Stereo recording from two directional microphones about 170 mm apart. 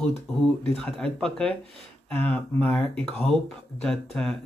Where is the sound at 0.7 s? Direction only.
5° left (ahead or behind).